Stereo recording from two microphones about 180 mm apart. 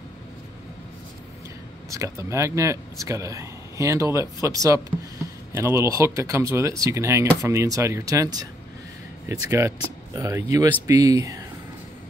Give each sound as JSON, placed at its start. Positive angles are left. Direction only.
{"t": 1.9, "sound": "speech", "side_deg": -20}